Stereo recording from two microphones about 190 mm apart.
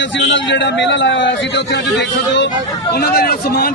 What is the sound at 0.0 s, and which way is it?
A man's voice, 70° left (ahead or behind).